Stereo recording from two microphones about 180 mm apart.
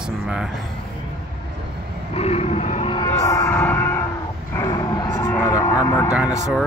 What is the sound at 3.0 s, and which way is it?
Music, 15° left (ahead or behind).